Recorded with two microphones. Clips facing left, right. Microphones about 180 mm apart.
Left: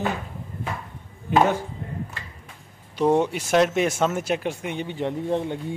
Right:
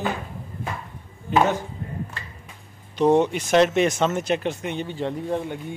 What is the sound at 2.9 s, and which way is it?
Speech, 10° left (ahead or behind).